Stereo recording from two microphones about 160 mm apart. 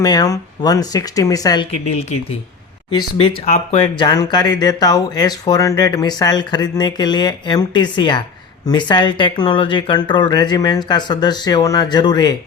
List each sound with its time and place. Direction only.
0.0 s speech: 25° left (ahead or behind)
2.9 s speech: 30° left (ahead or behind)